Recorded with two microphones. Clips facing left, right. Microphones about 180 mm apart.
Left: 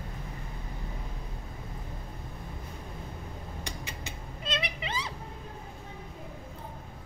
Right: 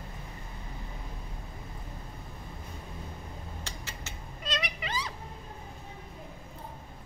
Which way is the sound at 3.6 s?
15° left (ahead or behind).